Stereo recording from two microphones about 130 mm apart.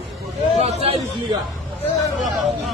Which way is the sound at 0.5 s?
55° right (ahead or behind).